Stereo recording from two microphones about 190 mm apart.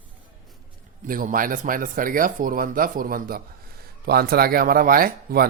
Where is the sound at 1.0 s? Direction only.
45° right (ahead or behind).